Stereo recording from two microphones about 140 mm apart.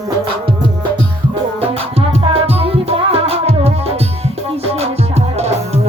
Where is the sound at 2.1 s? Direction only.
45° right (ahead or behind).